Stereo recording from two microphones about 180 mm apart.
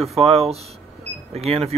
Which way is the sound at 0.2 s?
35° right (ahead or behind).